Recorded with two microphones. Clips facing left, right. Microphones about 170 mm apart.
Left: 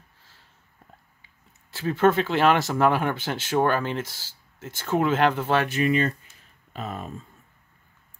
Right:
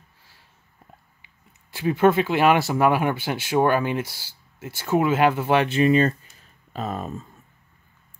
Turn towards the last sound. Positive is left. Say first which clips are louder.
# right 4 dB
turn(degrees=-40)  # may be behind; listen again after turning